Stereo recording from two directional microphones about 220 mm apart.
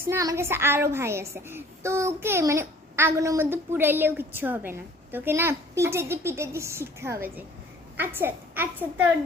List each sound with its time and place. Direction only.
0.0 s a woman's voice: 15° right (ahead or behind)